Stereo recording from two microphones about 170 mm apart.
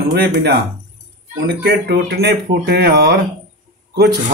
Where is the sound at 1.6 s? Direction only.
75° right (ahead or behind).